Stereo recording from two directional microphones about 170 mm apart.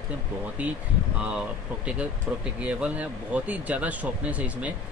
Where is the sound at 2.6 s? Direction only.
10° right (ahead or behind).